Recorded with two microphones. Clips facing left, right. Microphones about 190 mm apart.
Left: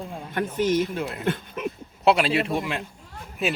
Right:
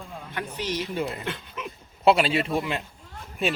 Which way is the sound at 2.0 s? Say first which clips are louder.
Even; centre (ahead or behind).